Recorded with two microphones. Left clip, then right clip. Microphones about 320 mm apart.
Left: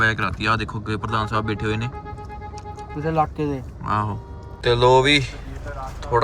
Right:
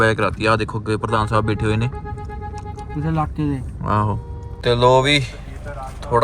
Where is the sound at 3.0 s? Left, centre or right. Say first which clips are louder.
Left 2 dB; left.